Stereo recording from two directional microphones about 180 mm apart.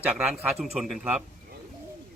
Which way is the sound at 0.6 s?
Centre (ahead or behind).